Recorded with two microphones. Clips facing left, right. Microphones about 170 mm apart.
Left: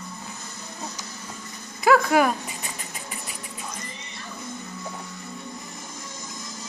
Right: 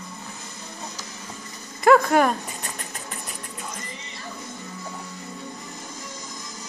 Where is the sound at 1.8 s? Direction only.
5° left (ahead or behind).